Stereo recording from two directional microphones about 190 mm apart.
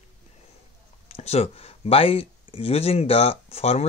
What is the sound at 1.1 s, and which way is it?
Speech, 30° left (ahead or behind).